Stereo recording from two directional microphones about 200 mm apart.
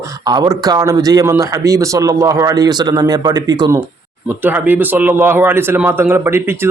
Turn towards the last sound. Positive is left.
turn(degrees=-10)  # may be behind; listen again after turning